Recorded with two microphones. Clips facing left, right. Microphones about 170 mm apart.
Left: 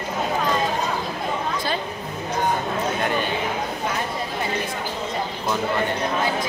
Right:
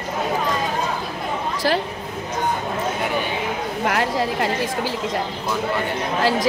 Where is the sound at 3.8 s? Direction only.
85° right.